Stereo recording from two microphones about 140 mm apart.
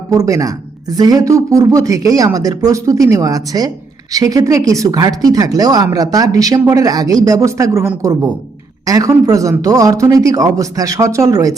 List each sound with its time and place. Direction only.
0.1 s speech: 25° right (ahead or behind)